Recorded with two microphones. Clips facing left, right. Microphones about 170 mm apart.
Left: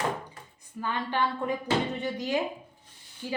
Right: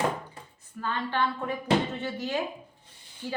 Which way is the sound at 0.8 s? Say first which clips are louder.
Even; 15° left (ahead or behind).